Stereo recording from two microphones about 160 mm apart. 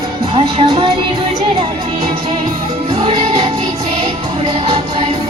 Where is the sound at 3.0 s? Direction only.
40° right (ahead or behind).